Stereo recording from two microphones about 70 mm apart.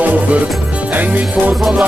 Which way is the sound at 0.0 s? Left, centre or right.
Right.